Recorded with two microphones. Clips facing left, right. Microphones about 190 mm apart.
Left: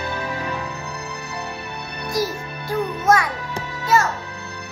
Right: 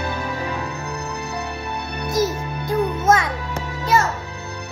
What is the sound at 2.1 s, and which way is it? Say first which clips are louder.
Music: right 3 dB; 20° right (ahead or behind).